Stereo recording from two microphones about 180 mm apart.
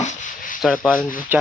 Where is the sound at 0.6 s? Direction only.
5° left (ahead or behind).